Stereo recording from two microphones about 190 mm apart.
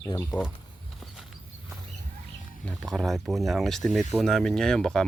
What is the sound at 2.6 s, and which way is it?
Speech, 5° left (ahead or behind).